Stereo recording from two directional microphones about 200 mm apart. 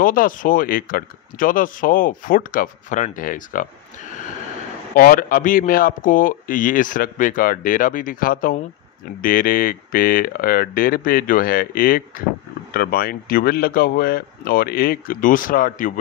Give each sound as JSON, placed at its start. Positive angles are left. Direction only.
{"t": 0.0, "sound": "a man's voice", "side_deg": 45}
{"t": 4.9, "sound": "a man's voice", "side_deg": 45}